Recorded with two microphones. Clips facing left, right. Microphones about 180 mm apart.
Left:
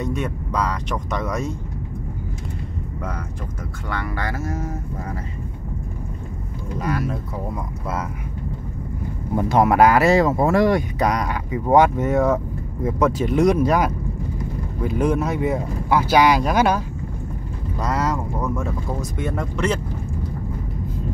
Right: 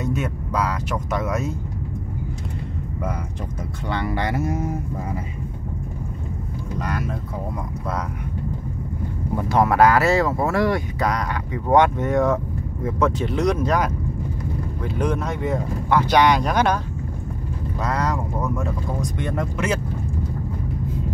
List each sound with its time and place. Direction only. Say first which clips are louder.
0.0 s speech: even; 5° right (ahead or behind)
3.9 s speech: right 3 dB; 25° right (ahead or behind)
6.8 s speech: left 4 dB; 5° left (ahead or behind)
9.5 s speech: left 1 dB; 20° left (ahead or behind); by 19.8 s centre (ahead or behind)